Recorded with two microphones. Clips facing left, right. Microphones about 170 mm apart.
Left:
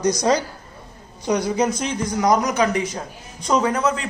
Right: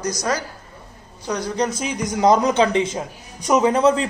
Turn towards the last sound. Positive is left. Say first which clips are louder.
# right 4 dB
turn(degrees=-30)  # may be behind; listen again after turning